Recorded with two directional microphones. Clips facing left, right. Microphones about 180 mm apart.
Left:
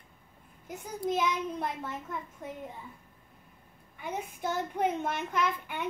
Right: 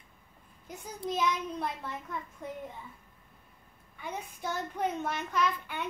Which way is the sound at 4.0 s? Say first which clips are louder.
Left 3 dB; 15° left (ahead or behind).